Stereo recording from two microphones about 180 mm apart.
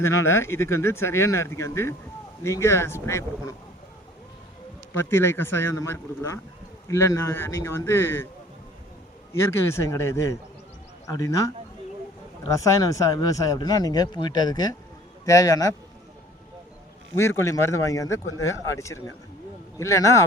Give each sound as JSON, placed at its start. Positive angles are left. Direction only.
{"t": 0.0, "sound": "speech", "side_deg": 15}
{"t": 4.9, "sound": "speech", "side_deg": 15}
{"t": 9.3, "sound": "speech", "side_deg": 15}
{"t": 17.2, "sound": "speech", "side_deg": 15}